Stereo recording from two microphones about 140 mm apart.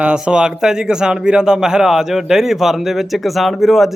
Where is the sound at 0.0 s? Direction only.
5° right (ahead or behind).